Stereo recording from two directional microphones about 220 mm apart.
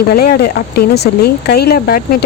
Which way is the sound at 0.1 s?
45° left (ahead or behind).